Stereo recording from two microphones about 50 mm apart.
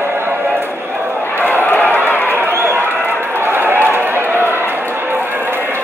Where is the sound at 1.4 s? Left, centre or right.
Left.